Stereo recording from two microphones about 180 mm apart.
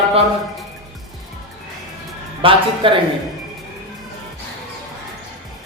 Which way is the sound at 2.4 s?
30° right (ahead or behind).